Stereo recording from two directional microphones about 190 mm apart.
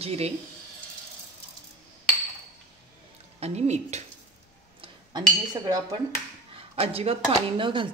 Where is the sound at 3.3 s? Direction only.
35° right (ahead or behind).